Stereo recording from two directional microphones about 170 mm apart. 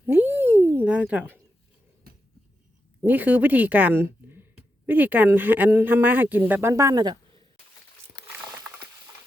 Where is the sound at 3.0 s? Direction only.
10° right (ahead or behind).